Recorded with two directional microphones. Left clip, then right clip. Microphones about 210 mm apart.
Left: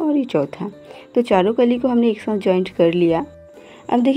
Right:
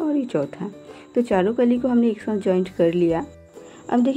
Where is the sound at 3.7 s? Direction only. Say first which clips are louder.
Left 4 dB; 25° left (ahead or behind).